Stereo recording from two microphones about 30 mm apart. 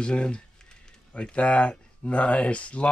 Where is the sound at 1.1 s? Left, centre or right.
Left.